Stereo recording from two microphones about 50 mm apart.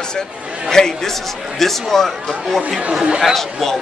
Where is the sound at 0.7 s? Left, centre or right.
Centre.